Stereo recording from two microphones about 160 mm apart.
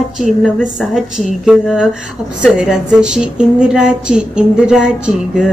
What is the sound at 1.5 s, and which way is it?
A woman's voice, 5° right (ahead or behind).